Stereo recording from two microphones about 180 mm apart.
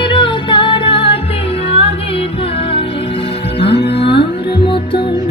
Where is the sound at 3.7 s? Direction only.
70° left (ahead or behind).